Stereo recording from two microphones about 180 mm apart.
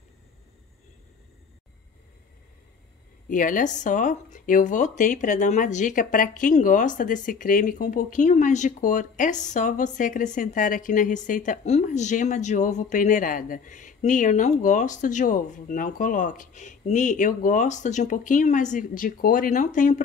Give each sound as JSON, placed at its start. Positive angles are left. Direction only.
{"t": 3.3, "sound": "speech", "side_deg": 50}